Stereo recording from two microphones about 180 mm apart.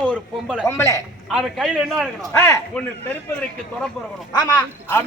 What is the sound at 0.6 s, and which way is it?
Speech, 15° left (ahead or behind).